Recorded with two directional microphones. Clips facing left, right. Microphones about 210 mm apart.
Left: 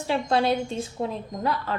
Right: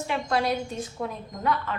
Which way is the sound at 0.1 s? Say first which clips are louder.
Left 4 dB; 30° left (ahead or behind).